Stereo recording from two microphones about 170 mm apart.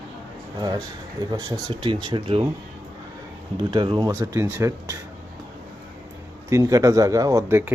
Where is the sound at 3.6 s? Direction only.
30° right (ahead or behind).